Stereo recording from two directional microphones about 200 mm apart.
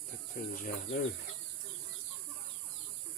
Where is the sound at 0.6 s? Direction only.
40° left (ahead or behind).